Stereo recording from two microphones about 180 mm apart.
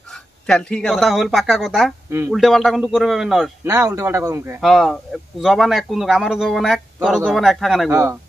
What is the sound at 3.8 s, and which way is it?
Speech, 15° right (ahead or behind).